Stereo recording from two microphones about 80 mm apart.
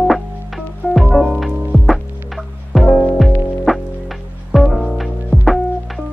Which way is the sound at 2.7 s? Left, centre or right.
Centre.